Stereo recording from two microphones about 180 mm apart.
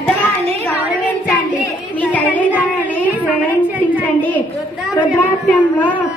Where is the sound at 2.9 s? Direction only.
10° left (ahead or behind).